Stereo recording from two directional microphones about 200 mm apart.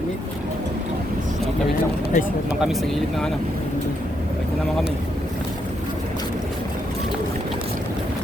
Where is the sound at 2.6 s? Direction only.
Centre (ahead or behind).